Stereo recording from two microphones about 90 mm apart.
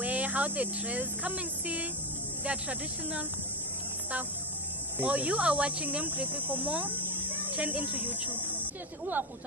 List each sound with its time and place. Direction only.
0.0 s speech: 15° right (ahead or behind)
4.9 s speech: 15° right (ahead or behind)